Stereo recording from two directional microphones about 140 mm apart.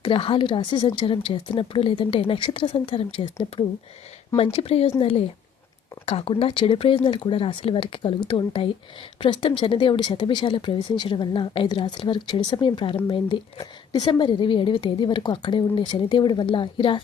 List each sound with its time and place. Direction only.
0.0 s a woman's voice: 40° left (ahead or behind)